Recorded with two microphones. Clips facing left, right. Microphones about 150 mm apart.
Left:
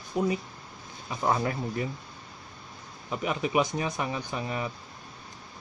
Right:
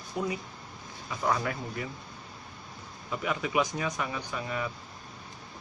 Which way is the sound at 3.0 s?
25° left (ahead or behind).